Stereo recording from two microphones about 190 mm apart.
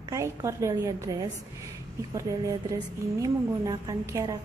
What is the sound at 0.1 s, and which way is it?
A woman's voice, 15° right (ahead or behind).